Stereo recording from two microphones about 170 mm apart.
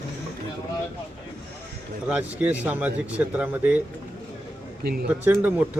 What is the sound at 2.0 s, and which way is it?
Speech, 10° right (ahead or behind).